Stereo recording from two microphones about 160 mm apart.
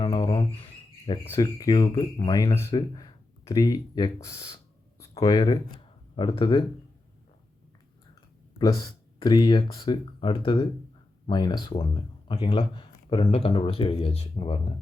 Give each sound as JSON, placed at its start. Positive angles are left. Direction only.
{"t": 0.0, "sound": "a sound", "side_deg": 30}
{"t": 1.3, "sound": "speech", "side_deg": 25}
{"t": 8.5, "sound": "speech", "side_deg": 25}